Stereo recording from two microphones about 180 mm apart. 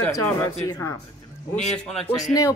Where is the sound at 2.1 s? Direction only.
20° left (ahead or behind).